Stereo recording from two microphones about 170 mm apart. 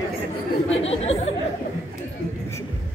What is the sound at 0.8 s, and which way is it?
Speech, 40° left (ahead or behind).